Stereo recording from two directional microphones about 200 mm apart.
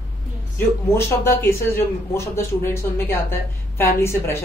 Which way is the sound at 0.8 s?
10° left (ahead or behind).